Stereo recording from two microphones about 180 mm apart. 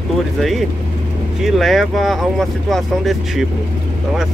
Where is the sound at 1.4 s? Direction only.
Centre (ahead or behind).